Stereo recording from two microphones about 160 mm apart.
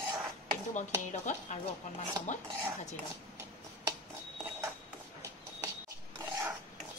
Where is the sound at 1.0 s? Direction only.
50° left (ahead or behind).